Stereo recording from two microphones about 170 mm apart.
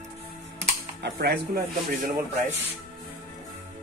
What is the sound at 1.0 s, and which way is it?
Speech, 75° right (ahead or behind).